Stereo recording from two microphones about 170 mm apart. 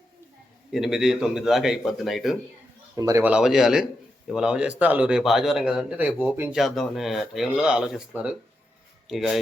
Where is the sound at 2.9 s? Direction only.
20° right (ahead or behind).